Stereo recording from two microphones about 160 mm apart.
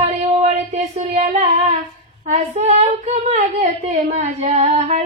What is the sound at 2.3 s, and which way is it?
Female singing, 45° right (ahead or behind).